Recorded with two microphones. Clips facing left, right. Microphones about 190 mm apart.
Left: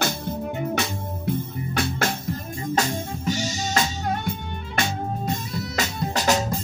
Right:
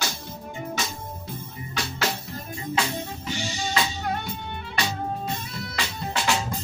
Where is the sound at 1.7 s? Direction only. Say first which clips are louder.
Left 3 dB; 55° left (ahead or behind).